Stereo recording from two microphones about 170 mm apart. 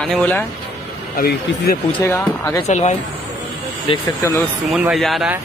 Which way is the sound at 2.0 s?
15° left (ahead or behind).